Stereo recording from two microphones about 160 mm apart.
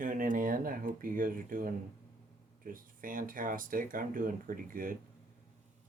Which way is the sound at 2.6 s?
60° right (ahead or behind).